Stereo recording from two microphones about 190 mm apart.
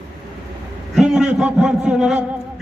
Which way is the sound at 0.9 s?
5° right (ahead or behind).